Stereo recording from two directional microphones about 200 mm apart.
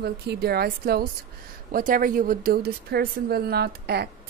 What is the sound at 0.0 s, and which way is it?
Speech, 55° right (ahead or behind).